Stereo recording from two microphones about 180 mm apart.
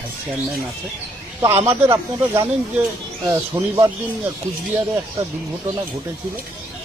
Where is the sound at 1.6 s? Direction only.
15° right (ahead or behind).